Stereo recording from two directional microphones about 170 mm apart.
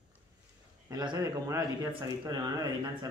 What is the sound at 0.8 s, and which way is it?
Speech, 25° right (ahead or behind).